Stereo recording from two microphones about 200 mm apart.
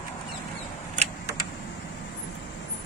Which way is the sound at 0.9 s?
35° right (ahead or behind).